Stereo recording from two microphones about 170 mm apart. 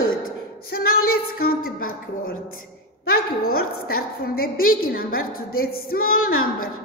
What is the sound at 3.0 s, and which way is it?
A woman's voice, 60° left (ahead or behind).